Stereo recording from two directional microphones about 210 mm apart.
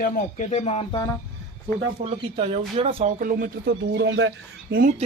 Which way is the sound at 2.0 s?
25° right (ahead or behind).